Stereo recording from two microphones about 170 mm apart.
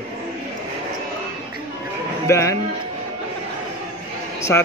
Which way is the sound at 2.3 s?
20° left (ahead or behind).